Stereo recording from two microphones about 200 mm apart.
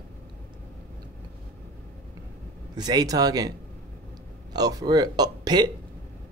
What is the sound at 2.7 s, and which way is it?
Speech, 20° right (ahead or behind).